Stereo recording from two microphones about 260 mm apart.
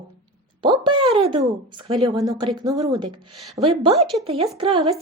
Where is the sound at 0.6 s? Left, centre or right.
Centre.